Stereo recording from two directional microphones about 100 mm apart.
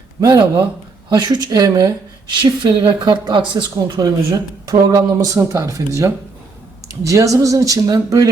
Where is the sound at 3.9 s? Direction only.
40° right (ahead or behind).